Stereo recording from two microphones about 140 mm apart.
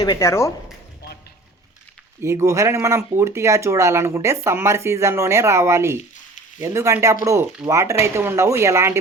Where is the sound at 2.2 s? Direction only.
20° right (ahead or behind).